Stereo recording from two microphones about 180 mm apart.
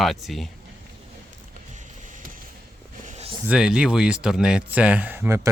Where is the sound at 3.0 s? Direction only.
35° right (ahead or behind).